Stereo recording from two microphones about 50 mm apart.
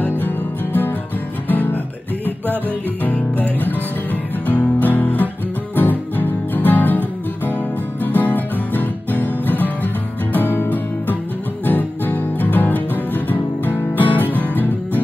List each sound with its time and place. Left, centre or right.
1.5 s guitar: left
2.2 s music: right
3.0 s music: left
8.0 s music: left